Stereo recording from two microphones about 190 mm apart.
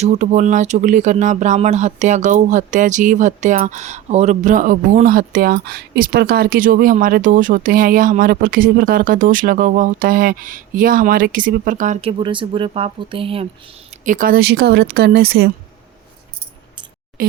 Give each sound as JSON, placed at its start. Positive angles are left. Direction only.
{"t": 0.0, "sound": "speech", "side_deg": -35}
{"t": 14.0, "sound": "speech", "side_deg": -45}
{"t": 17.2, "sound": "speech", "side_deg": -50}